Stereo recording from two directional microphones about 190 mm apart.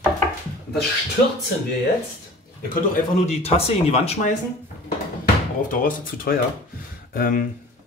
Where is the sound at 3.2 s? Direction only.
35° left (ahead or behind).